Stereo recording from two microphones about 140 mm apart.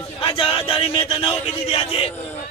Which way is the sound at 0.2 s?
40° left (ahead or behind).